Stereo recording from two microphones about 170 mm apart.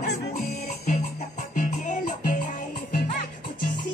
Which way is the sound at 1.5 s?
50° left (ahead or behind).